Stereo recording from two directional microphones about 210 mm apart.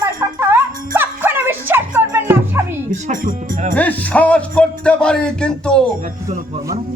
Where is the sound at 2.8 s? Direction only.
40° right (ahead or behind).